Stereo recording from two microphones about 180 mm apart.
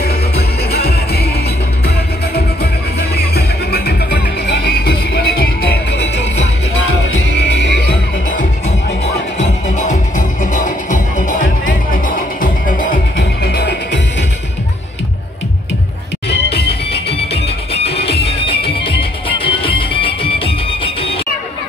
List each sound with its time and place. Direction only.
0.7 s music: 60° left (ahead or behind)
2.3 s music: 60° left (ahead or behind)
8.3 s music: 45° left (ahead or behind)
13.2 s music: 65° left (ahead or behind)
17.1 s music: 35° left (ahead or behind)